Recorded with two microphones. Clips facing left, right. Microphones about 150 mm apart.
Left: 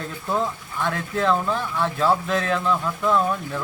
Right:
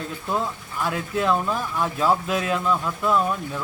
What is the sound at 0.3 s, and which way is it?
Speech, 5° right (ahead or behind).